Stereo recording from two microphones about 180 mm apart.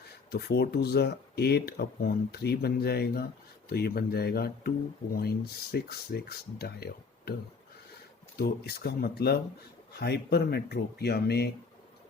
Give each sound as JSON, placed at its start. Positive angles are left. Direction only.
{"t": 0.3, "sound": "speech", "side_deg": 65}
{"t": 8.4, "sound": "speech", "side_deg": 60}